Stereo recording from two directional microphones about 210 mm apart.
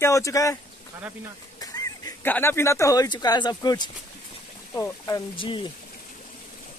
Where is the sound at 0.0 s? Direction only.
15° left (ahead or behind).